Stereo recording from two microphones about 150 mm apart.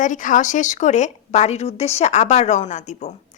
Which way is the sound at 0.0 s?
60° left (ahead or behind).